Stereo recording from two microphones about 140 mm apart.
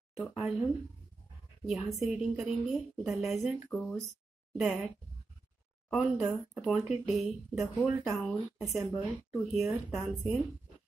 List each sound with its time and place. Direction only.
0.4 s a woman's voice: 5° right (ahead or behind)
1.7 s a woman's voice: centre (ahead or behind)